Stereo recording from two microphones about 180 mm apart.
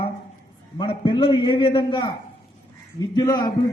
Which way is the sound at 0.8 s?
25° left (ahead or behind).